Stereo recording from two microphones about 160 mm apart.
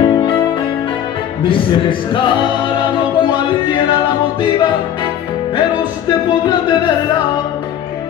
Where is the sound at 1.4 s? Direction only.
30° left (ahead or behind).